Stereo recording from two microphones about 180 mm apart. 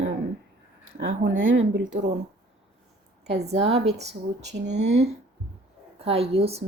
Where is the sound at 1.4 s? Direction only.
90° right.